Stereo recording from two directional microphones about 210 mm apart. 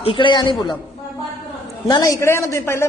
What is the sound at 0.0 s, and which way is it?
Speech, 25° left (ahead or behind).